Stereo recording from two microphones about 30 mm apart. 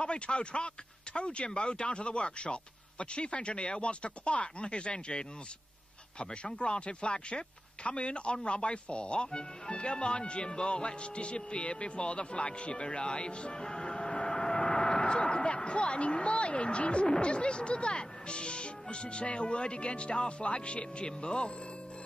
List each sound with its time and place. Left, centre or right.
0.0 s speech: left